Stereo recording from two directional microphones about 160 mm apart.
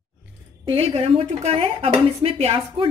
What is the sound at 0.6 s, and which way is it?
Speech, 35° right (ahead or behind).